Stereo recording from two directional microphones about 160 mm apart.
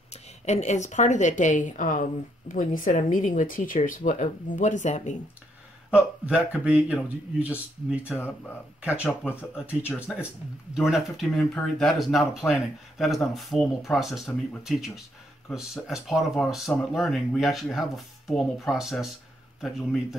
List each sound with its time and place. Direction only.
0.5 s a woman's voice: 45° left (ahead or behind)
6.2 s speech: 5° right (ahead or behind)
9.0 s speech: 15° left (ahead or behind)
9.6 s speech: 10° right (ahead or behind)